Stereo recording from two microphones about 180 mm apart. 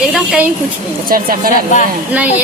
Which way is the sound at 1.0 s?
50° right (ahead or behind).